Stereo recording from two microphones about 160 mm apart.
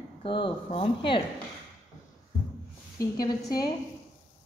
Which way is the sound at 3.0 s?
20° left (ahead or behind).